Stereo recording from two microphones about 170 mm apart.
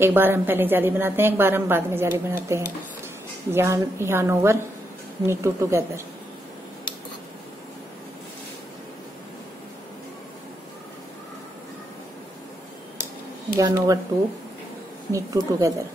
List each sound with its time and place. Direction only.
0.0 s a woman's voice: 15° right (ahead or behind)
13.6 s a woman's voice: 20° right (ahead or behind)
15.1 s a woman's voice: 20° right (ahead or behind)